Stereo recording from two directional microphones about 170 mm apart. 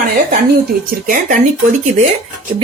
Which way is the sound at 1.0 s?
55° right (ahead or behind).